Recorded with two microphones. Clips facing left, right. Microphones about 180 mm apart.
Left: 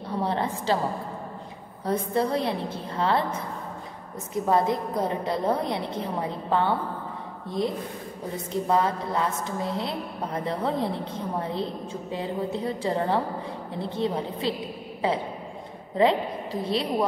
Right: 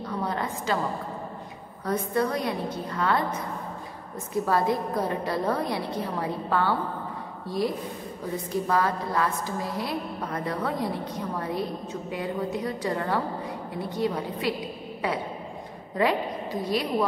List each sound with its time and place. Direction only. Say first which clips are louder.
0.2 s a sound: left 4 dB; 30° left (ahead or behind)
1.9 s a woman's voice: left 1 dB; 30° left (ahead or behind)
16.0 s a woman's voice: left 3 dB; 25° left (ahead or behind)